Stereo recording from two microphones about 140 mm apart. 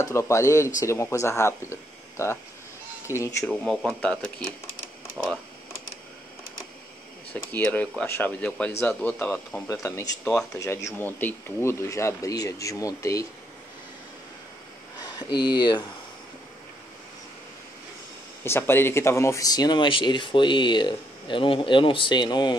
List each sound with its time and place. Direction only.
0.0 s speech: 20° left (ahead or behind)
3.4 s speech: 5° left (ahead or behind)
7.3 s speech: 10° left (ahead or behind)
9.7 s speech: 20° left (ahead or behind)
15.1 s speech: 30° left (ahead or behind)
18.4 s speech: 15° left (ahead or behind)